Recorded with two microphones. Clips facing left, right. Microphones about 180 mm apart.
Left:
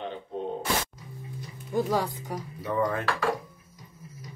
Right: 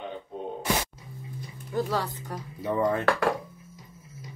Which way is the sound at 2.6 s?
25° right (ahead or behind).